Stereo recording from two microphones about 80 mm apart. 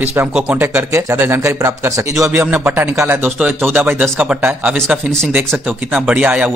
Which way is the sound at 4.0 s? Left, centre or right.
Centre.